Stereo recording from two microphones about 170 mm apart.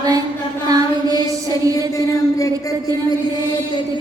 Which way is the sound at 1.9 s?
20° left (ahead or behind).